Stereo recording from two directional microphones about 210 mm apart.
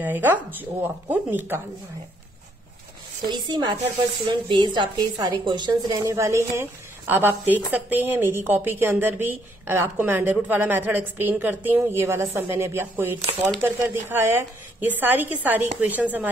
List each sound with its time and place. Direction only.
0.0 s a woman's voice: 10° right (ahead or behind)
3.3 s a woman's voice: 20° right (ahead or behind)